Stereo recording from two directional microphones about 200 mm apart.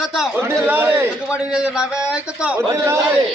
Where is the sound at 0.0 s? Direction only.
Centre (ahead or behind).